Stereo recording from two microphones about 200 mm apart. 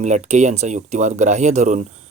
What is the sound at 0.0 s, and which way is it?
Speech, 35° right (ahead or behind).